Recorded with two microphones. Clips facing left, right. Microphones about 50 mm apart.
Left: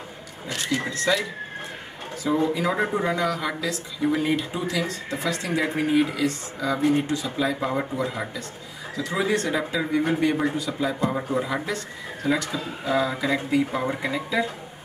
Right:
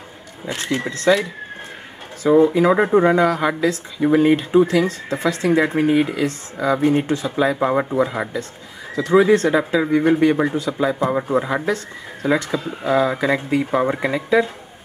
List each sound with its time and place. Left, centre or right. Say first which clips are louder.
0.5 s speech: right 4 dB; right
0.9 s speech: right 8 dB; right
2.2 s speech: right 10 dB; right
10.7 s speech: right 6 dB; right
12.3 s speech: right 5 dB; right